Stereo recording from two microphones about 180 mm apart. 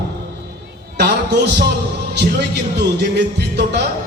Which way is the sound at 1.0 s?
65° right (ahead or behind).